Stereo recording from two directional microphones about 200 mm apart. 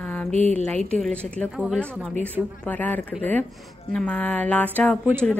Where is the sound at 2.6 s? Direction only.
10° left (ahead or behind).